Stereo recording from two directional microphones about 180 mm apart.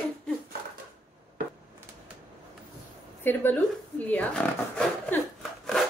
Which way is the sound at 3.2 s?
10° left (ahead or behind).